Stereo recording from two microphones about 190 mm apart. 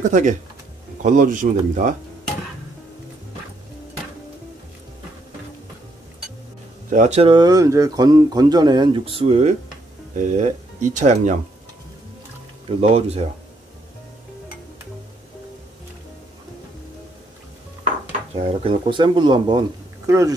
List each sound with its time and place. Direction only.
0.0 s speech: 40° right (ahead or behind)
6.9 s speech: 35° right (ahead or behind)
12.6 s speech: 30° right (ahead or behind)
18.3 s speech: 30° right (ahead or behind); by 20.3 s 15° right (ahead or behind)